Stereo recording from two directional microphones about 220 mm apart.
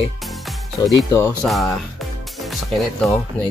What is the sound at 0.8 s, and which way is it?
Mantra, 20° left (ahead or behind).